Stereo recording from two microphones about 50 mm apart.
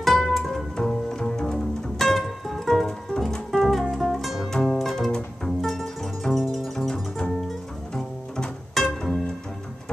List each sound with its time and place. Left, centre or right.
0.0 s music: centre
0.7 s bowed string instrument: centre
2.0 s music: centre
4.5 s music: centre
6.9 s double bass: centre
8.7 s music: centre